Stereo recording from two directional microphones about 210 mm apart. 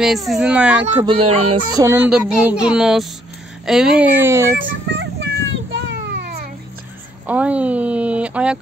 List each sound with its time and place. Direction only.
0.0 s speech: centre (ahead or behind)
1.0 s a sound: 30° right (ahead or behind)
1.8 s speech: 10° right (ahead or behind)
4.6 s child singing: 60° right (ahead or behind)
7.2 s speech: 5° right (ahead or behind)